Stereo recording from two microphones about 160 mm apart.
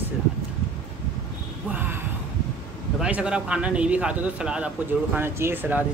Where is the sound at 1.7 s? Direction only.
10° right (ahead or behind).